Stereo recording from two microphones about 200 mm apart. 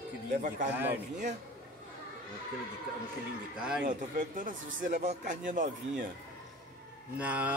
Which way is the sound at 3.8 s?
40° right (ahead or behind).